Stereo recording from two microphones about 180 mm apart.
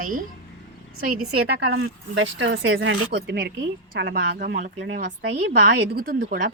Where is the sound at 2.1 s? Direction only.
80° right.